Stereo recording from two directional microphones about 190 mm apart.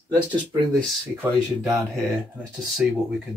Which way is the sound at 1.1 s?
10° right (ahead or behind).